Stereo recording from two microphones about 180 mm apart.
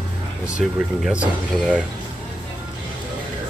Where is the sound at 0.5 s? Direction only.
5° right (ahead or behind).